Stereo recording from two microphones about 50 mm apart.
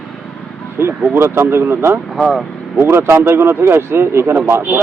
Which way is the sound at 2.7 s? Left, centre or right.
Right.